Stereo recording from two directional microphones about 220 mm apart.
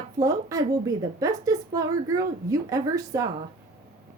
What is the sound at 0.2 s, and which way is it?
A woman's voice, 15° right (ahead or behind).